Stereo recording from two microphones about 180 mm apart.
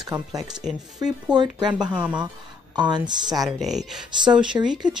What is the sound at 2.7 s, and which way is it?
Speech, 25° right (ahead or behind).